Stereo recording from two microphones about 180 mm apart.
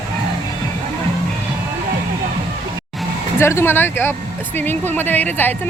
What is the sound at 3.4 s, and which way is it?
Speech, 15° left (ahead or behind).